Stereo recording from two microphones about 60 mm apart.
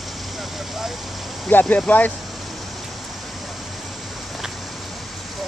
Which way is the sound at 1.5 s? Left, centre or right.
Left.